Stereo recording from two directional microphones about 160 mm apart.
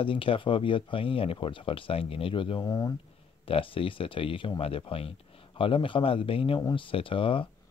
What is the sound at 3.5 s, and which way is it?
Speech, 35° left (ahead or behind).